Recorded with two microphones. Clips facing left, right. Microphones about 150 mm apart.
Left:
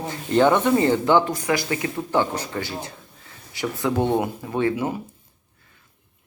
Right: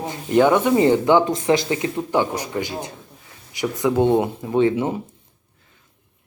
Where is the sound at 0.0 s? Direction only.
15° right (ahead or behind).